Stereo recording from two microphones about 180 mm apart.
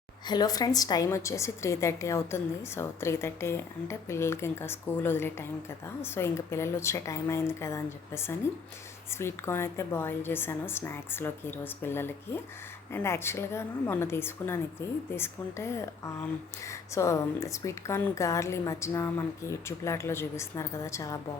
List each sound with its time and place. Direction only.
0.3 s a woman's voice: 20° left (ahead or behind)